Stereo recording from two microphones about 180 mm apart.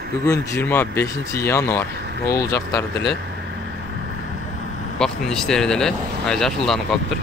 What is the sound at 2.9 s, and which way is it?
Speech, 70° left (ahead or behind).